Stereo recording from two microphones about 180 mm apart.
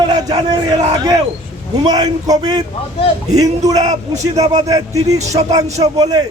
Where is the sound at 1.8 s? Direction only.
20° right (ahead or behind).